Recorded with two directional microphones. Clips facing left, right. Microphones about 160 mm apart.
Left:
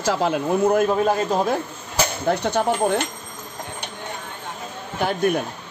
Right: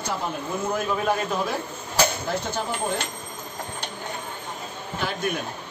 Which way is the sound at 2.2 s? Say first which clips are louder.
Left 7 dB; 65° left (ahead or behind).